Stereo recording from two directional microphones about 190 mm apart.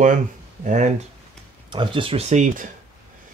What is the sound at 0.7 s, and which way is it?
Speech, 40° right (ahead or behind).